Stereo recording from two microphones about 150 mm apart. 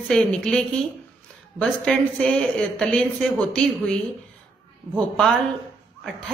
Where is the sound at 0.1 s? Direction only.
5° left (ahead or behind).